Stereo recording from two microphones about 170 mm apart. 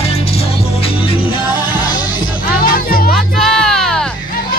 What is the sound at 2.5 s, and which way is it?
Music, 60° left (ahead or behind).